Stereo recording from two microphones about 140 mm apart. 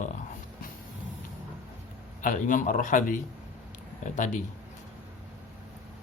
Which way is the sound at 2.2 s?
70° left (ahead or behind).